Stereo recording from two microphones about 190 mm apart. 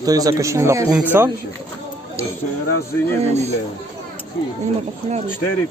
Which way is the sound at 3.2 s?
35° right (ahead or behind).